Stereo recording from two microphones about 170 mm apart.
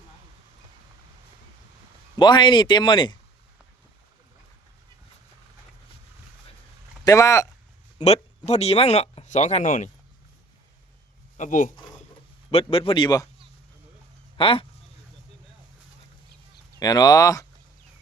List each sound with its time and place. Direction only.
2.1 s speech: 25° left (ahead or behind)
7.0 s speech: 20° left (ahead or behind)
7.9 s speech: 40° left (ahead or behind)
11.3 s speech: 50° left (ahead or behind)
12.5 s speech: 35° left (ahead or behind)
14.3 s speech: 30° left (ahead or behind)
16.8 s speech: 20° left (ahead or behind)